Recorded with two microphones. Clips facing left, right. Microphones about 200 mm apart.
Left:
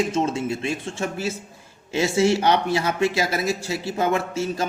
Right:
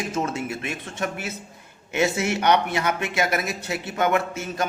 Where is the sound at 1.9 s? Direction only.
30° left (ahead or behind).